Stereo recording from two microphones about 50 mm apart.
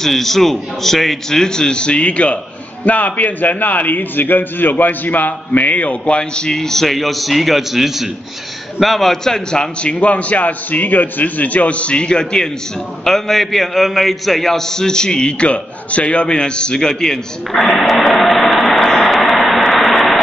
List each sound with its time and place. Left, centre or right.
0.0 s a man's voice: centre